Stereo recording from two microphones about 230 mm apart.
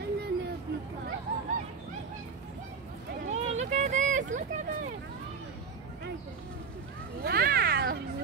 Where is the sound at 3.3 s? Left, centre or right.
Right.